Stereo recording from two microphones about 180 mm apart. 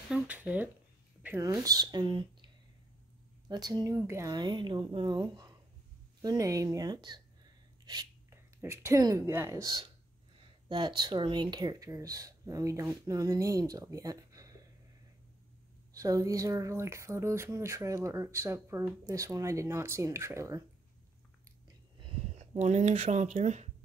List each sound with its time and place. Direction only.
0.1 s speech: 10° right (ahead or behind)
1.5 s a woman's voice: 20° right (ahead or behind)
15.9 s speech: 20° right (ahead or behind)
22.0 s a sound: 40° right (ahead or behind)
22.6 s speech: 40° right (ahead or behind)